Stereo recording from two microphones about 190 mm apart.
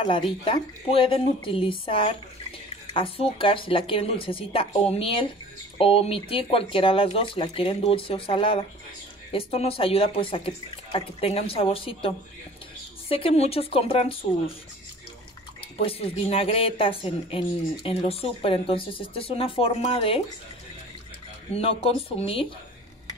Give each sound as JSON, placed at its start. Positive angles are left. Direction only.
{"t": 0.0, "sound": "a woman's voice", "side_deg": 30}
{"t": 13.1, "sound": "speech", "side_deg": 30}
{"t": 15.8, "sound": "a woman's voice", "side_deg": 30}
{"t": 21.5, "sound": "speech", "side_deg": 30}